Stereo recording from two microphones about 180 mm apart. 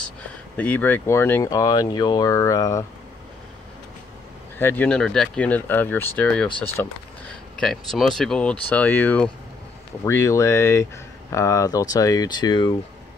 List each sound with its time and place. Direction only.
0.6 s speech: 10° left (ahead or behind)
4.6 s speech: 10° left (ahead or behind); by 12.7 s 25° left (ahead or behind)